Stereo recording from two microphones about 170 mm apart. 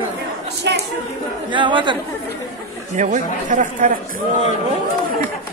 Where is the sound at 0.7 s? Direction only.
90° right.